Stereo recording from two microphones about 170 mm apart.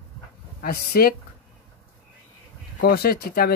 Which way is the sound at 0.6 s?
60° left (ahead or behind).